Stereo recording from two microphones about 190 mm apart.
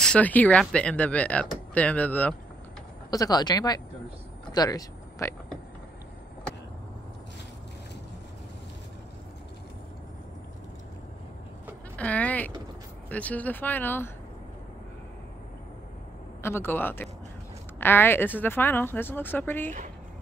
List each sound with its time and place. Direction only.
0.0 s speech: 5° left (ahead or behind)
3.1 s speech: 20° left (ahead or behind)
12.0 s speech: 10° left (ahead or behind)
16.4 s speech: 10° left (ahead or behind)